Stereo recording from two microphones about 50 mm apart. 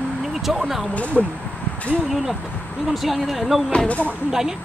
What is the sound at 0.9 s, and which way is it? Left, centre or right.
Speech, left.